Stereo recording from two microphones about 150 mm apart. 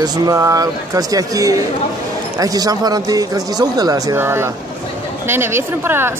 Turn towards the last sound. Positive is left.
turn(degrees=-15)  # may be behind; listen again after turning